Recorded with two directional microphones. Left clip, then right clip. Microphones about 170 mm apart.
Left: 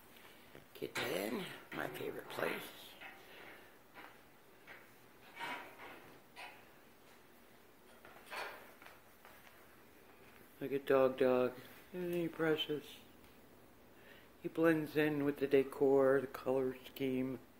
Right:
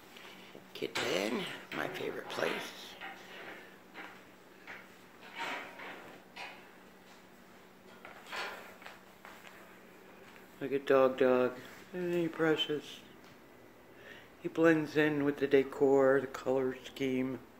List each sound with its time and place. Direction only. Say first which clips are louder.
0.7 s speech: right 6 dB; 20° right (ahead or behind)
1.3 s speech: right 6 dB; 5° right (ahead or behind)
10.6 s speech: right 5 dB; centre (ahead or behind)
14.0 s speech: right 5 dB; centre (ahead or behind)